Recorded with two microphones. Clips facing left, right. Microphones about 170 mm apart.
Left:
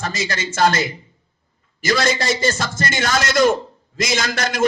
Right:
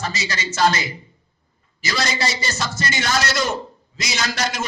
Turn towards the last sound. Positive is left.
turn(degrees=50)  # may be behind; listen again after turning